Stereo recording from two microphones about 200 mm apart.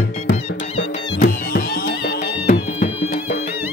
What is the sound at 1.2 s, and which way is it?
Music, 45° left (ahead or behind).